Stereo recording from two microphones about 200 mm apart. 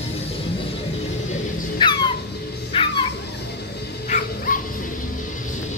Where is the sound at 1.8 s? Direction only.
25° left (ahead or behind).